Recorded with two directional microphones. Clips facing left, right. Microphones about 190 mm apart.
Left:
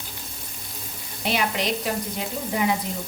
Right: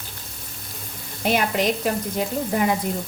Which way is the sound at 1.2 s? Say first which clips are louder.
Right 4 dB; 50° right (ahead or behind).